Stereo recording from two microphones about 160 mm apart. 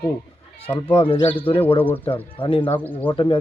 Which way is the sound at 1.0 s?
35° left (ahead or behind).